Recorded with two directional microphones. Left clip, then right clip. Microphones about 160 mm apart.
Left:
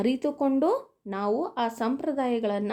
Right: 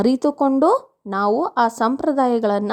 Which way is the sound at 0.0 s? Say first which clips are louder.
Right 8 dB; 45° right (ahead or behind).